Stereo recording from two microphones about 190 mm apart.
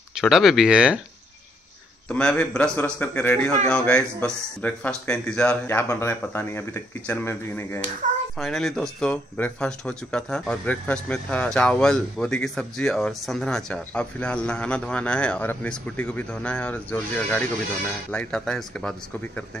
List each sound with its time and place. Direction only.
0.1 s speech: centre (ahead or behind)
2.0 s a man's voice: 5° left (ahead or behind)
8.0 s a sound: 40° right (ahead or behind)
8.4 s speech: 5° left (ahead or behind)